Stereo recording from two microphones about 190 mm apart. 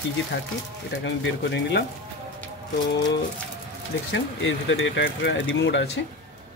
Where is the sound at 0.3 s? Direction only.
60° left (ahead or behind).